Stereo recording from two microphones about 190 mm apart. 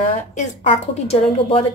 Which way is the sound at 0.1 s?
40° left (ahead or behind).